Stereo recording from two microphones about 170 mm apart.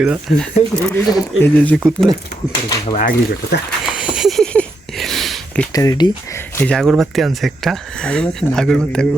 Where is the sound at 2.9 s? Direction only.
55° left (ahead or behind).